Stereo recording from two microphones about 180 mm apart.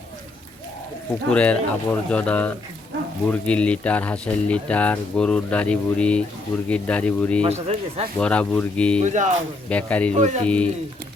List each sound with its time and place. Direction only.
1.3 s speech: 5° left (ahead or behind)
7.4 s speech: 35° right (ahead or behind)
8.2 s speech: 5° left (ahead or behind)
9.0 s speech: 40° right (ahead or behind)
9.6 s speech: 5° left (ahead or behind)
10.1 s speech: 40° right (ahead or behind)
10.4 s speech: 5° left (ahead or behind)